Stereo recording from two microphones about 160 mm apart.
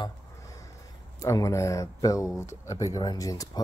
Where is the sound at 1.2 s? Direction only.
20° left (ahead or behind).